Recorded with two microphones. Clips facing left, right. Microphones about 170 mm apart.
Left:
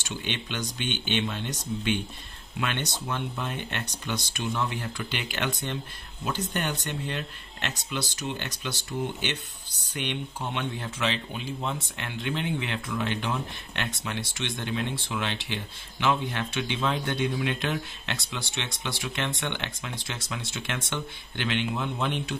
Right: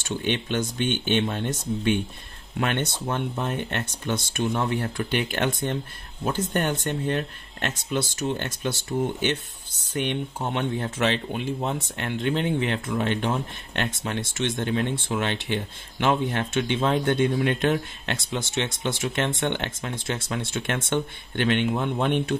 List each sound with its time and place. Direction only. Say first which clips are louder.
0.0 s speech: right 7 dB; 50° right (ahead or behind)
9.9 s speech: right 5 dB; 45° right (ahead or behind)